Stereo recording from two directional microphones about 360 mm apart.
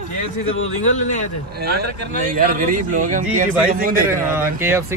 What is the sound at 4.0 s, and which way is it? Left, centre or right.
Fowl, centre.